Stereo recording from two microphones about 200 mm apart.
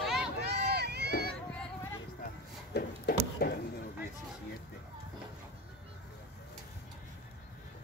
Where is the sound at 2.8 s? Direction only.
50° left (ahead or behind).